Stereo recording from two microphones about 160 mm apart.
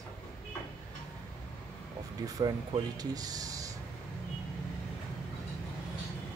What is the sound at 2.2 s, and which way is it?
Speech, 25° right (ahead or behind).